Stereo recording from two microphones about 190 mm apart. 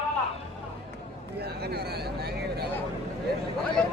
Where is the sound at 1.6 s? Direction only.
55° right (ahead or behind).